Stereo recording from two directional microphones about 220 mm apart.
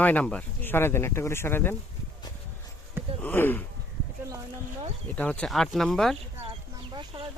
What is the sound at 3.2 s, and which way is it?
Speech, 10° left (ahead or behind).